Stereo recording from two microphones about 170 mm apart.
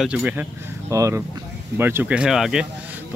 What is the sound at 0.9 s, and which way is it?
Speech, 20° right (ahead or behind).